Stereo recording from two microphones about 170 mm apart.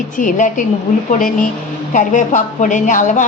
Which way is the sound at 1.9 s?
50° left (ahead or behind).